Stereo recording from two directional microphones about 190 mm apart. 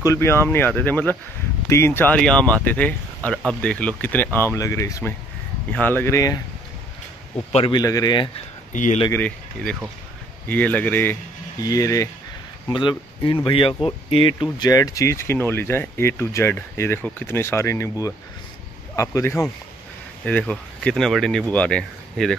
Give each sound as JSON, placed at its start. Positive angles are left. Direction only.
{"t": 0.0, "sound": "speech", "side_deg": 15}
{"t": 7.5, "sound": "a man's voice", "side_deg": 25}
{"t": 8.7, "sound": "speech", "side_deg": 40}
{"t": 9.1, "sound": "speech", "side_deg": 5}